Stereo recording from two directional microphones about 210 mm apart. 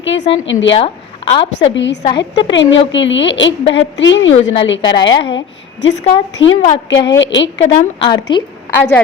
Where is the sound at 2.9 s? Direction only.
60° left (ahead or behind).